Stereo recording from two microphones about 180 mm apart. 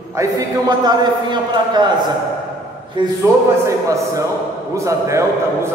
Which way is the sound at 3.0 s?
25° right (ahead or behind).